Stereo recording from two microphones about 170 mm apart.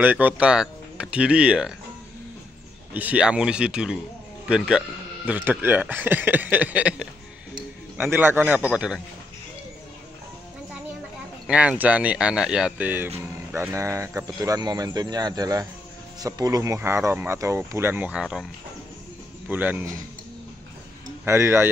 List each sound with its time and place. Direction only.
0.0 s speech: 10° right (ahead or behind)
2.9 s a man's voice: 10° right (ahead or behind)
11.4 s a man's voice: 5° right (ahead or behind)
21.3 s a man's voice: 15° right (ahead or behind)